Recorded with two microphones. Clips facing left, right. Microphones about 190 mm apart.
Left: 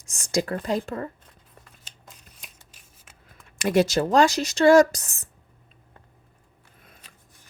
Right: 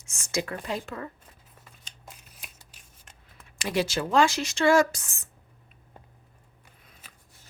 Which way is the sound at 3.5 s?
50° left (ahead or behind).